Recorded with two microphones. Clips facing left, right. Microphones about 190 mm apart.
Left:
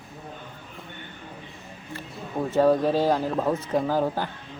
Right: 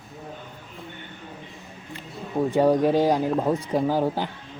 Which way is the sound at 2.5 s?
15° right (ahead or behind).